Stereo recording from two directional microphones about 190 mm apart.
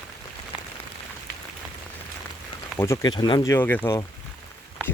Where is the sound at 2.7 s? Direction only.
15° left (ahead or behind).